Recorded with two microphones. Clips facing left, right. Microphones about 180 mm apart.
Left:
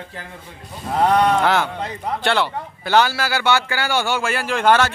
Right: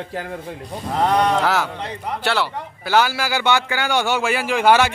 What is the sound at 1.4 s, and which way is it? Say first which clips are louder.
A man's voice: left 2 dB; 5° right (ahead or behind).